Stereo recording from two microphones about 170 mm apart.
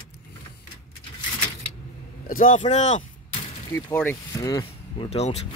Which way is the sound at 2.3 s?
50° left (ahead or behind).